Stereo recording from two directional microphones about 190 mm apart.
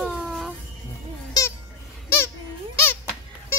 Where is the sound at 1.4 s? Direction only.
20° left (ahead or behind).